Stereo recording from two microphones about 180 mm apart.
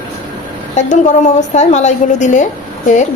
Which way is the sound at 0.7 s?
40° left (ahead or behind).